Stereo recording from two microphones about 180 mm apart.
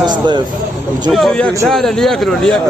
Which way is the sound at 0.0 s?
25° right (ahead or behind).